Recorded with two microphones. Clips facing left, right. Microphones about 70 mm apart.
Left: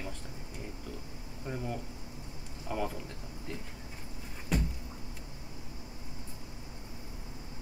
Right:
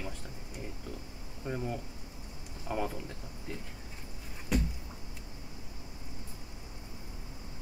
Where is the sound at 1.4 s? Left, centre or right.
Centre.